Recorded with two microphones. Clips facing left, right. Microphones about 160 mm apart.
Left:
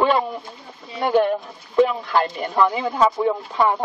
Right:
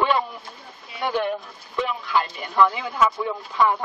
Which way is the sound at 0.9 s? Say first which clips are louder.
Left 6 dB; 40° left (ahead or behind).